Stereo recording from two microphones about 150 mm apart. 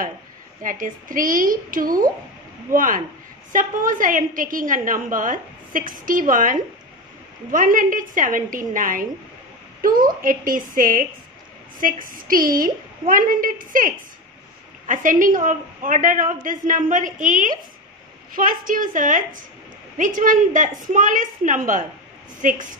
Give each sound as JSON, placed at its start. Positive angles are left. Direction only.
{"t": 0.6, "sound": "a woman's voice", "side_deg": -65}